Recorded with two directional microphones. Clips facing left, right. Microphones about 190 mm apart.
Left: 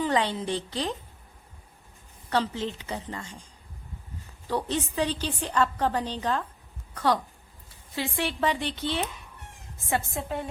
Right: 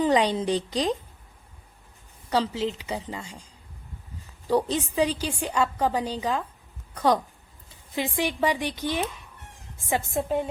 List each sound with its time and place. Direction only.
0.0 s a woman's voice: 15° right (ahead or behind)
2.3 s a woman's voice: 10° right (ahead or behind)
4.4 s a woman's voice: 15° right (ahead or behind)